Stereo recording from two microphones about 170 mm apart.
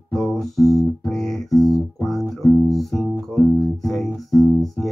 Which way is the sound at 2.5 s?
Centre (ahead or behind).